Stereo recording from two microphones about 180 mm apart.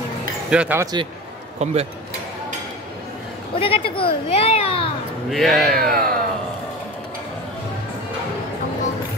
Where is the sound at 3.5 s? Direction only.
30° left (ahead or behind).